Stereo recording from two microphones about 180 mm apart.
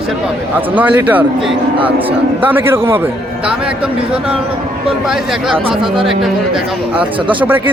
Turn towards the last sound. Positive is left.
turn(degrees=-25)  # may be behind; listen again after turning